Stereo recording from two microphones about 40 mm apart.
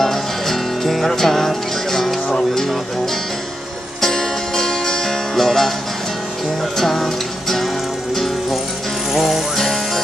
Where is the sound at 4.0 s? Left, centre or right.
Centre.